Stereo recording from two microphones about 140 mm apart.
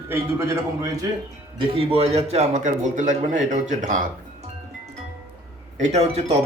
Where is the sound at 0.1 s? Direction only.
20° right (ahead or behind).